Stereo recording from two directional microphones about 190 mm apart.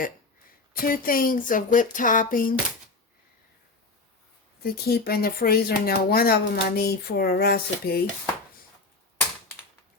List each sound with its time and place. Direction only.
0.7 s speech: 50° left (ahead or behind)
4.6 s speech: 55° left (ahead or behind)